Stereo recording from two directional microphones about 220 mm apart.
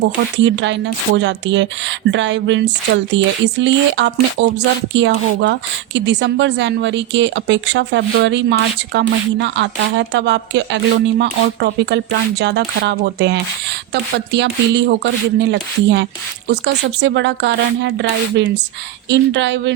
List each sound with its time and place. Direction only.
0.0 s a woman's voice: 55° right (ahead or behind)